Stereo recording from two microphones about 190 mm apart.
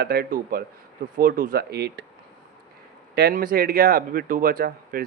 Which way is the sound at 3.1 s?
50° right (ahead or behind).